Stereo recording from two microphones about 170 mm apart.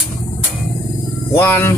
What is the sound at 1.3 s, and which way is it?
Speech, 10° left (ahead or behind).